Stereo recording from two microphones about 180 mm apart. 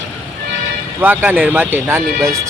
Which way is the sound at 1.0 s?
10° right (ahead or behind).